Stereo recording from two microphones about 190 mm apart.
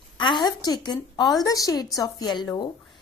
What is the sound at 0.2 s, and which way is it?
A woman's voice, 25° left (ahead or behind).